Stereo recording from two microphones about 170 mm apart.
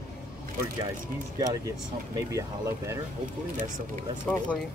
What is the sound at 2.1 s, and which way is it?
Speech, 20° right (ahead or behind).